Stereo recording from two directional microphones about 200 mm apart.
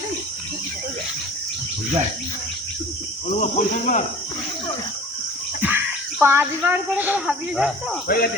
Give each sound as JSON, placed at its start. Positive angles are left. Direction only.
{"t": 3.4, "sound": "speech", "side_deg": 35}
{"t": 5.6, "sound": "a woman's voice", "side_deg": -10}
{"t": 8.0, "sound": "speech", "side_deg": 45}